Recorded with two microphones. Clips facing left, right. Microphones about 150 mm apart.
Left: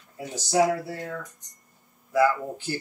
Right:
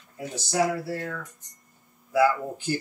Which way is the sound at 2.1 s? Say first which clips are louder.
Even; 5° right (ahead or behind).